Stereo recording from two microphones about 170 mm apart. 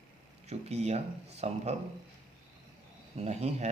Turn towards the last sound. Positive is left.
turn(degrees=-40)  # may be behind; listen again after turning